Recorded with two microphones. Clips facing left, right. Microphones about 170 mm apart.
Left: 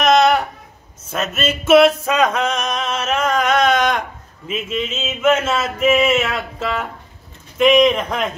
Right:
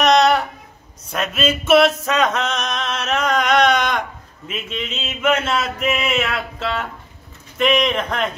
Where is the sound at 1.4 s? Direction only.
5° left (ahead or behind).